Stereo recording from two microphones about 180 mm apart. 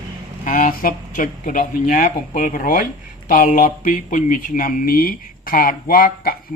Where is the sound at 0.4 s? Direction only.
45° left (ahead or behind).